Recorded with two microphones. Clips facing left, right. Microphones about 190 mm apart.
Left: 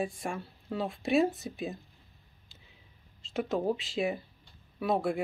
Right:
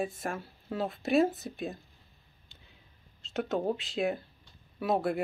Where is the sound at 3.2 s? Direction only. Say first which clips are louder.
Left 1 dB; centre (ahead or behind).